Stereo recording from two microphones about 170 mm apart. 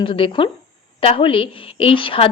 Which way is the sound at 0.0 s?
30° left (ahead or behind).